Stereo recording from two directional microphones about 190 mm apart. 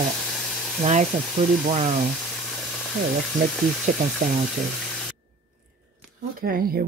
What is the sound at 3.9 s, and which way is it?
Speech, 40° right (ahead or behind).